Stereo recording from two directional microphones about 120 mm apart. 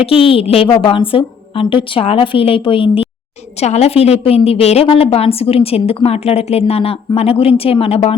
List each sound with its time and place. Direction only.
0.0 s a woman's voice: 50° left (ahead or behind)
3.6 s a woman's voice: 65° left (ahead or behind)